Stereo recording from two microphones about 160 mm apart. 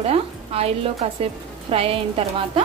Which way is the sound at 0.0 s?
40° right (ahead or behind).